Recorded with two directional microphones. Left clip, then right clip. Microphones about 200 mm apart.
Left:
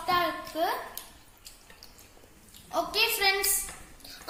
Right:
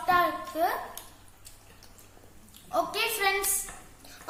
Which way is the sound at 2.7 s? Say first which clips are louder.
Left 1 dB; 15° right (ahead or behind).